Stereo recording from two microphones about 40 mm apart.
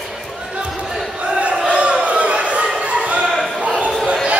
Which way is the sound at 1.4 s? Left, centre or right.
Right.